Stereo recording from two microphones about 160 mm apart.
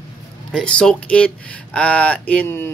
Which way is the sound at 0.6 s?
5° left (ahead or behind).